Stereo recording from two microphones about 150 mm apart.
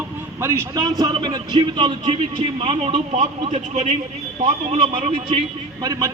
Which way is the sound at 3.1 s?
50° right (ahead or behind).